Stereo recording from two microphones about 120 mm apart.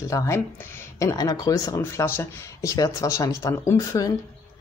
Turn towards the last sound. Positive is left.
turn(degrees=30)  # may be behind; listen again after turning